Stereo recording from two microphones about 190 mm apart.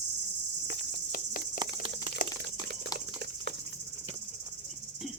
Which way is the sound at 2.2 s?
45° left (ahead or behind).